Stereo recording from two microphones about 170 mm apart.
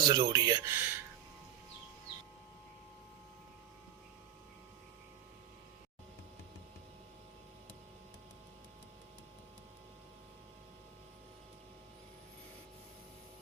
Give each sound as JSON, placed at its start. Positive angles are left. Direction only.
{"t": 0.0, "sound": "speech", "side_deg": -20}